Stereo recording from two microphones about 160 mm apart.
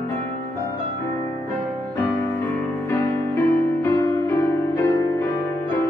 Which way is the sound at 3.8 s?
15° left (ahead or behind).